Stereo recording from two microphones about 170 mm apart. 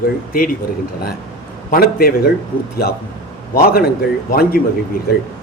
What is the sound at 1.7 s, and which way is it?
A man's voice, 60° left (ahead or behind).